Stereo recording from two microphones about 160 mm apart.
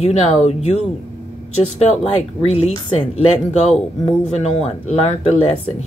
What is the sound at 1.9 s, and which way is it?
Speech, 40° left (ahead or behind).